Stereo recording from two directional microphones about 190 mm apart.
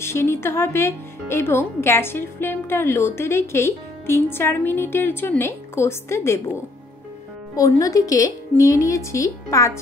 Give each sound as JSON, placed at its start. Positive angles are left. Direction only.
{"t": 0.0, "sound": "speech", "side_deg": 15}
{"t": 7.5, "sound": "speech", "side_deg": 15}